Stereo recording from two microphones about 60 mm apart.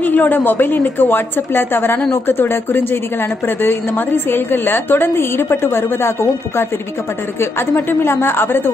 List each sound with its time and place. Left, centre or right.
0.0 s a woman's voice: left